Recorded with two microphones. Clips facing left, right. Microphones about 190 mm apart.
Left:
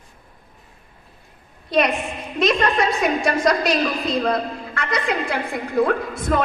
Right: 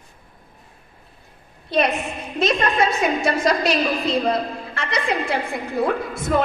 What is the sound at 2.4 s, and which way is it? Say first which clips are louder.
A woman's voice: left 1 dB; 25° right (ahead or behind).